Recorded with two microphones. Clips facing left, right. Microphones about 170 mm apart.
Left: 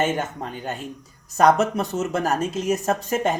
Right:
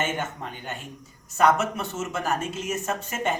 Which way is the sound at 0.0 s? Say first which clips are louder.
Left 5 dB; 40° left (ahead or behind).